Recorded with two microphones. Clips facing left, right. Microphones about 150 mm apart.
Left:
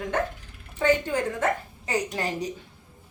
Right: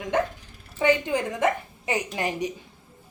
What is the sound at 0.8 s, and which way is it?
A woman's voice, 15° right (ahead or behind).